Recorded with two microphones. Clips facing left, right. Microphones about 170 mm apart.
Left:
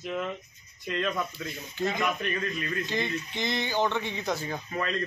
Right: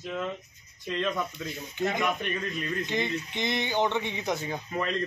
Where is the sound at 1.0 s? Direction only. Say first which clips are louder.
Even; centre (ahead or behind).